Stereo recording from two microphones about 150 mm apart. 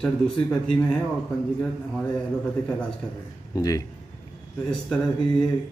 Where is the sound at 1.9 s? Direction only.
5° left (ahead or behind).